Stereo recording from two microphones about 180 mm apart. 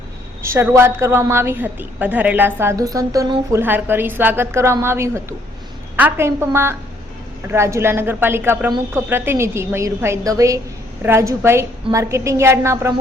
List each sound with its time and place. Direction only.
0.4 s a woman's voice: 15° right (ahead or behind)